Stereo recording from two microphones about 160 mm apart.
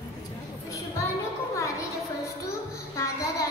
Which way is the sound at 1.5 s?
20° left (ahead or behind).